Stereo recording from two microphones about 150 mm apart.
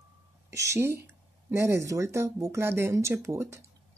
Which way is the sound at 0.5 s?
20° right (ahead or behind).